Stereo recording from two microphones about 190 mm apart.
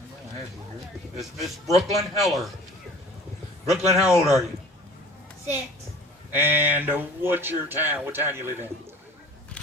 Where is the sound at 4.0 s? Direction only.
5° right (ahead or behind).